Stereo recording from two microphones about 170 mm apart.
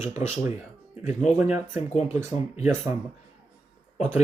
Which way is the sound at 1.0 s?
45° left (ahead or behind).